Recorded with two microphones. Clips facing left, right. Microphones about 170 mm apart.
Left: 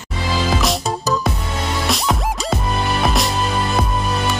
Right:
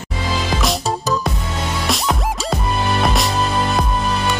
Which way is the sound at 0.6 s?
Centre (ahead or behind).